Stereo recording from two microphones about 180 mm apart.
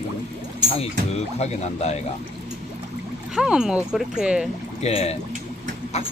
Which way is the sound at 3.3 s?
5° right (ahead or behind).